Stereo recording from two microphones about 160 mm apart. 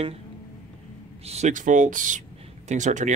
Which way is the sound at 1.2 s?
45° right (ahead or behind).